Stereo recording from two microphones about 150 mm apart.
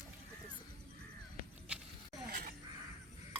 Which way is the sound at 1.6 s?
5° right (ahead or behind).